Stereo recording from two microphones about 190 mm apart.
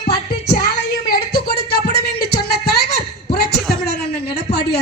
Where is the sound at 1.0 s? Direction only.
50° left (ahead or behind).